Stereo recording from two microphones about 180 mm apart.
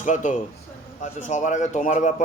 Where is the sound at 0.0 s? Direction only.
45° left (ahead or behind).